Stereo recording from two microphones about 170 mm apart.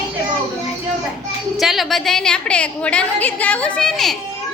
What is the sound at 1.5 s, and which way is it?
A woman's voice, centre (ahead or behind).